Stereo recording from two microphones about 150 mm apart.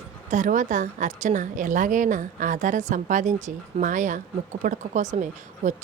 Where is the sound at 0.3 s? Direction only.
55° right (ahead or behind).